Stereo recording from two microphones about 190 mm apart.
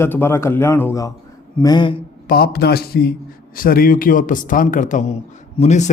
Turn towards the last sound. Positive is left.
turn(degrees=40)  # may be behind; listen again after turning